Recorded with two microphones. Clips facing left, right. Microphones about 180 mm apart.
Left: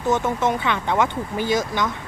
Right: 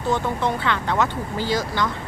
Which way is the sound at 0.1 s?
20° left (ahead or behind).